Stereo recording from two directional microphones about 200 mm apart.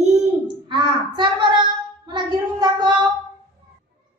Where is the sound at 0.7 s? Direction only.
25° right (ahead or behind).